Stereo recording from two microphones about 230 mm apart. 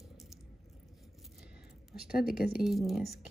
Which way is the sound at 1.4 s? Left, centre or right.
Centre.